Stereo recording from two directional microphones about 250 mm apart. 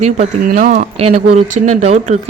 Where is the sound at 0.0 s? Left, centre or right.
Right.